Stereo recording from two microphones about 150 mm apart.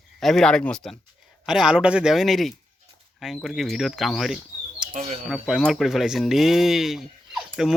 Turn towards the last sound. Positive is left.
turn(degrees=0)  # may be behind; listen again after turning